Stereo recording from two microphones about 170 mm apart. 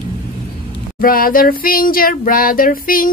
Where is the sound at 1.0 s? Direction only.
55° left (ahead or behind).